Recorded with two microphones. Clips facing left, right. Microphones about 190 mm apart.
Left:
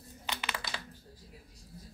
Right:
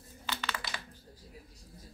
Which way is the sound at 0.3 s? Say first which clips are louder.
Even; 15° left (ahead or behind).